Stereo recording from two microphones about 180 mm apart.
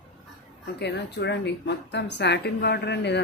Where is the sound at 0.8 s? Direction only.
70° left (ahead or behind).